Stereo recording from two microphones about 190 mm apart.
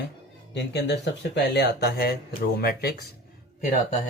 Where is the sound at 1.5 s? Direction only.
60° left (ahead or behind).